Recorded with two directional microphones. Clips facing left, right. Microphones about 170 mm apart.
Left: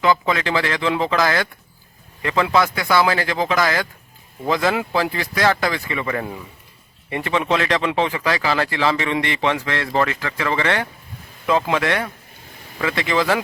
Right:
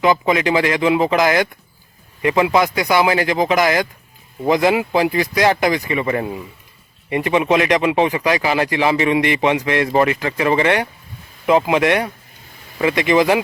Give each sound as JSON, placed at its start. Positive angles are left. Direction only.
{"t": 0.0, "sound": "speech", "side_deg": -15}